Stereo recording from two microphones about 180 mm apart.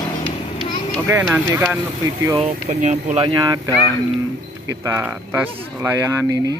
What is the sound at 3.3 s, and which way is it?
Speech, 20° right (ahead or behind).